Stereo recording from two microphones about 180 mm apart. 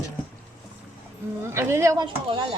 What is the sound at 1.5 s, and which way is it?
Speech, 15° right (ahead or behind).